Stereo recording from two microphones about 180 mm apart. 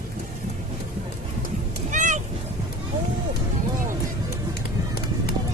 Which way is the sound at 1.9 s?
45° right (ahead or behind).